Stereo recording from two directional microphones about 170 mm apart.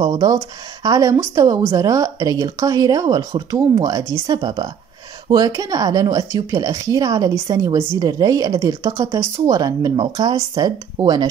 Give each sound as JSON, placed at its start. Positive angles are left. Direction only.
{"t": 0.0, "sound": "speech", "side_deg": -20}